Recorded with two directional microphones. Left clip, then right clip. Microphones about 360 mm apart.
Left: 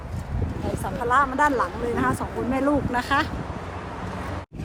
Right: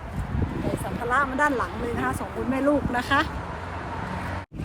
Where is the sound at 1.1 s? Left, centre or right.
Centre.